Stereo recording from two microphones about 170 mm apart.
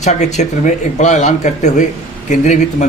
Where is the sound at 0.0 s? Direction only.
45° left (ahead or behind).